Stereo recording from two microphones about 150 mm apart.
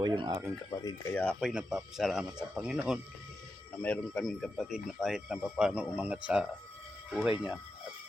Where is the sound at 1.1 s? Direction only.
5° left (ahead or behind).